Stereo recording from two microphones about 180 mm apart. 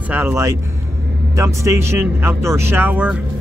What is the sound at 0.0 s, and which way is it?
Speech, 10° right (ahead or behind).